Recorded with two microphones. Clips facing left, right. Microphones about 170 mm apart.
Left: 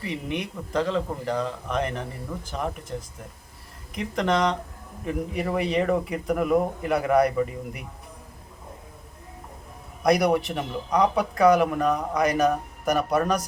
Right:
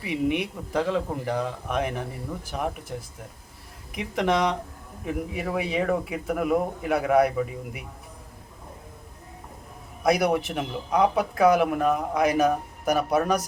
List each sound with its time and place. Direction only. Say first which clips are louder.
0.0 s speech: right 5 dB; 10° right (ahead or behind)
3.9 s speech: even; 10° right (ahead or behind)
10.0 s speech: left 1 dB; 5° right (ahead or behind)